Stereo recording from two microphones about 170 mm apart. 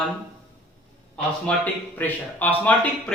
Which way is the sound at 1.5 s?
10° left (ahead or behind).